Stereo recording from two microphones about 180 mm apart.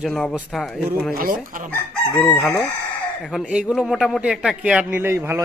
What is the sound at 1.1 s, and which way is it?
Speech, 50° right (ahead or behind).